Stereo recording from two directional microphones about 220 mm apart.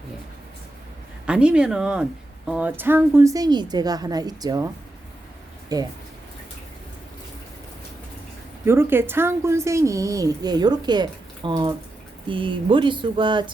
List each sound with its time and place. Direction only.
1.3 s a woman's voice: 5° right (ahead or behind)
5.7 s a woman's voice: 15° right (ahead or behind)
8.6 s a woman's voice: 10° right (ahead or behind)